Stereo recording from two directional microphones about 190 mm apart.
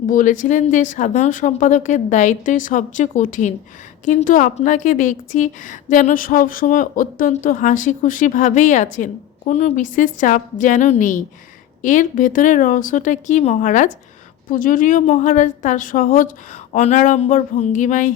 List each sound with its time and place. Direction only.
0.1 s a woman's voice: 45° left (ahead or behind)